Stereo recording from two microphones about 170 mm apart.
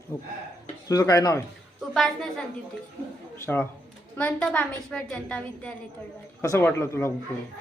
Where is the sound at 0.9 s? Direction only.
20° left (ahead or behind).